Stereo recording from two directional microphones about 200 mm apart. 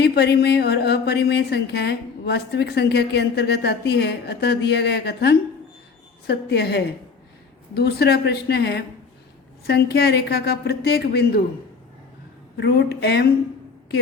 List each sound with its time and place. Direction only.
0.0 s a woman's voice: 55° left (ahead or behind)
12.5 s a woman's voice: 55° left (ahead or behind)